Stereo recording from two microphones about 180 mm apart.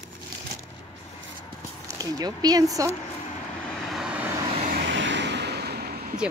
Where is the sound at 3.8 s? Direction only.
Centre (ahead or behind).